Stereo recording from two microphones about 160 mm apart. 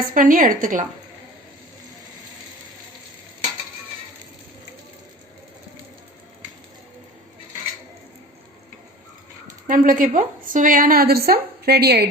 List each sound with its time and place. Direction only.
0.1 s a woman's voice: 60° right (ahead or behind)
9.6 s a woman's voice: 60° right (ahead or behind); by 12.0 s 90° right